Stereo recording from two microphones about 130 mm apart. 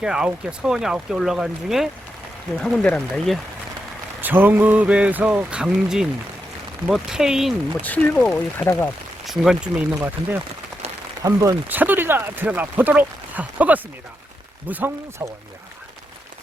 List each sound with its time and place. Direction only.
0.0 s speech: 5° right (ahead or behind)
4.2 s speech: 15° right (ahead or behind)
7.8 s speech: 10° left (ahead or behind)
9.2 s speech: centre (ahead or behind)
11.2 s speech: 25° right (ahead or behind)
11.7 s speech: 15° right (ahead or behind)